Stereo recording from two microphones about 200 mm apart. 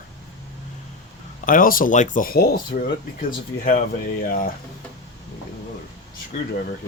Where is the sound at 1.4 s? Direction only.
45° left (ahead or behind).